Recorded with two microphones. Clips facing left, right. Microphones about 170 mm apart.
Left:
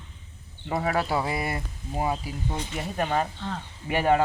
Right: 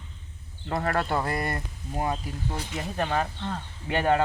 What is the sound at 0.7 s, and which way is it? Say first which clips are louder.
Speech: left 1 dB; 5° left (ahead or behind).